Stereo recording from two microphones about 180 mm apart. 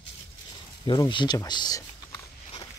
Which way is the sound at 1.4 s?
20° left (ahead or behind).